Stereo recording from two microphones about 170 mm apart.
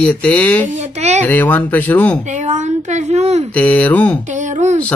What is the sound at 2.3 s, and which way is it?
A woman's voice, 45° right (ahead or behind).